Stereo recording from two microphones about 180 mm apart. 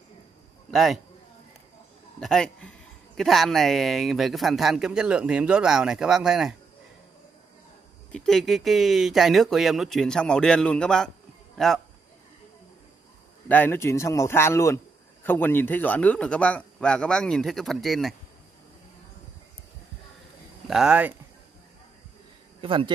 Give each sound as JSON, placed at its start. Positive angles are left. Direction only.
{"t": 0.7, "sound": "a man's voice", "side_deg": 0}
{"t": 2.1, "sound": "a man's voice", "side_deg": 5}
{"t": 8.1, "sound": "a man's voice", "side_deg": 0}
{"t": 13.5, "sound": "a man's voice", "side_deg": 10}
{"t": 20.6, "sound": "speech", "side_deg": -5}
{"t": 22.6, "sound": "speech", "side_deg": -30}